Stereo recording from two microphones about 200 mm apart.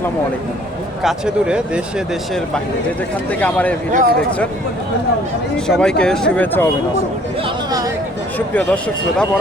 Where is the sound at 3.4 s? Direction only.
10° left (ahead or behind).